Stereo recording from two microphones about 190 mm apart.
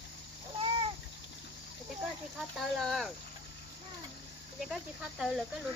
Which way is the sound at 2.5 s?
Centre (ahead or behind).